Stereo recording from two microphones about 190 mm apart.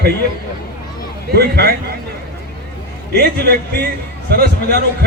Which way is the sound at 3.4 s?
55° right (ahead or behind).